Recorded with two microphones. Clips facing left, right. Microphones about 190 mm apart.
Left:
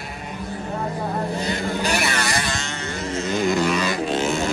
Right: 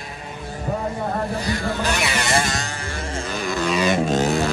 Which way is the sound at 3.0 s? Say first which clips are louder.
Left 4 dB; 30° right (ahead or behind).